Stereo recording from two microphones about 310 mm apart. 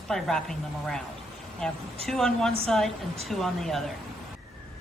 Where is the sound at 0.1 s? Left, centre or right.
Centre.